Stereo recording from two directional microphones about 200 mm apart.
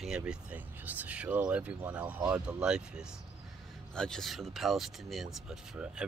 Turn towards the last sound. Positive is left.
turn(degrees=-5)  # may be behind; listen again after turning